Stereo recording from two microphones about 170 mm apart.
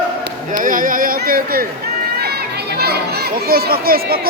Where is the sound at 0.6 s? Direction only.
55° right (ahead or behind).